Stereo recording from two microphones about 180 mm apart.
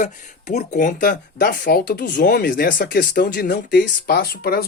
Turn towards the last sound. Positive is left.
turn(degrees=60)  # may be behind; listen again after turning